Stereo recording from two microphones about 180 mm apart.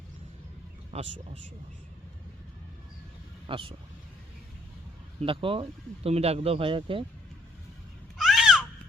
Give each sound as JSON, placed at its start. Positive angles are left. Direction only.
{"t": 0.9, "sound": "speech", "side_deg": -35}
{"t": 3.4, "sound": "speech", "side_deg": -30}
{"t": 5.2, "sound": "speech", "side_deg": -30}
{"t": 8.2, "sound": "a sound", "side_deg": 0}